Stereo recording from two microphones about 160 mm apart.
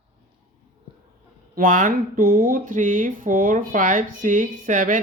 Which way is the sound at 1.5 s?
60° right (ahead or behind).